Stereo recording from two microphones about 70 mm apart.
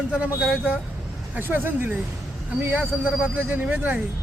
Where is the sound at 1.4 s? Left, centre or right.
Right.